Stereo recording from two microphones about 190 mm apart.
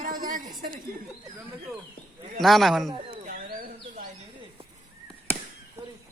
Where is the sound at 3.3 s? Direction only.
50° right (ahead or behind).